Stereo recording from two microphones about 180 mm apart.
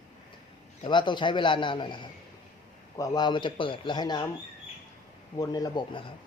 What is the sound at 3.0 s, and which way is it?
Speech, 25° left (ahead or behind).